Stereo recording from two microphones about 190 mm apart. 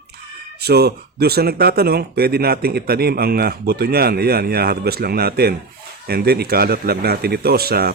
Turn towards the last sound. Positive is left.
turn(degrees=-55)  # may be behind; listen again after turning